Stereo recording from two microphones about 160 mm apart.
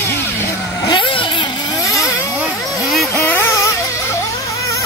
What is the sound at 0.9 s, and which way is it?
Vehicle, 30° left (ahead or behind).